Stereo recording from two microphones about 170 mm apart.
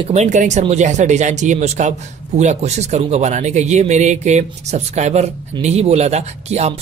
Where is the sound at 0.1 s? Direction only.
45° right (ahead or behind).